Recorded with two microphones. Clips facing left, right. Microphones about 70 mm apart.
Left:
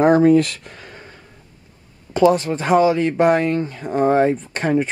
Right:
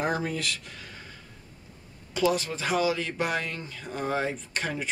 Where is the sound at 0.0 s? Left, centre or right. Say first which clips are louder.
Left 16 dB; left.